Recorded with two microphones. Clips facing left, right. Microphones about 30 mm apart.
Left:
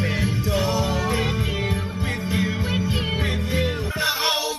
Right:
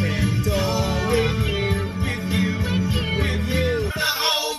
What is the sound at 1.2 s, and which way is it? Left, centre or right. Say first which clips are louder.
Music: right 2 dB; centre.